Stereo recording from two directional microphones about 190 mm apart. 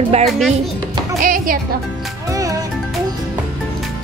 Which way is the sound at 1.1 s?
45° right (ahead or behind).